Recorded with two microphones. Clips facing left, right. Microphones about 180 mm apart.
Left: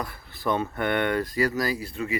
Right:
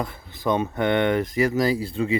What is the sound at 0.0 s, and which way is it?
Speech, 20° right (ahead or behind).